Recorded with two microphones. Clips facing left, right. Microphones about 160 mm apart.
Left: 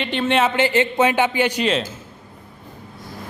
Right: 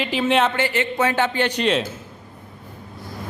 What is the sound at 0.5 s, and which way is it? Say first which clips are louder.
A man's voice: left 4 dB; 25° left (ahead or behind).